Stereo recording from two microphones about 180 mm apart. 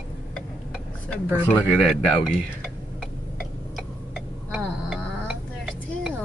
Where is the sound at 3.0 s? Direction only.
Centre (ahead or behind).